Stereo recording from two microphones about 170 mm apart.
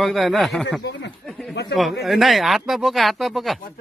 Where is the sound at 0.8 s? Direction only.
90° left.